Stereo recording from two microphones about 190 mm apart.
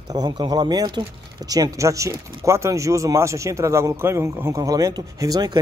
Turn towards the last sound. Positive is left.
turn(degrees=-20)  # may be behind; listen again after turning